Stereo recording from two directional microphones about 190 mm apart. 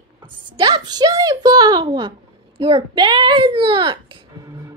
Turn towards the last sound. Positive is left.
turn(degrees=-25)  # may be behind; listen again after turning